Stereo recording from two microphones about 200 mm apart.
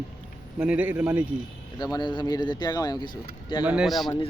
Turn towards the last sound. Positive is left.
turn(degrees=0)  # may be behind; listen again after turning